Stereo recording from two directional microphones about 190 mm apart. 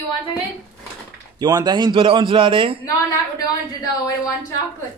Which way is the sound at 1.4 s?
20° right (ahead or behind).